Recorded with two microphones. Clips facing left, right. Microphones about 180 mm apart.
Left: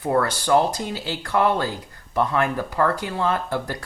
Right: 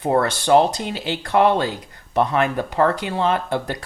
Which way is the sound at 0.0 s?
25° right (ahead or behind).